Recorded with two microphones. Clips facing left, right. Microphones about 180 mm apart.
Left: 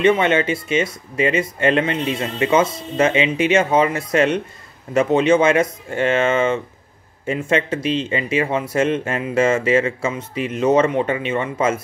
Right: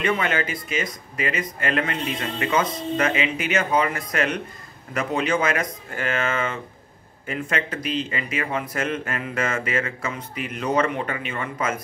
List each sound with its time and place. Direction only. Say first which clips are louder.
0.0 s speech: left 8 dB; 25° left (ahead or behind)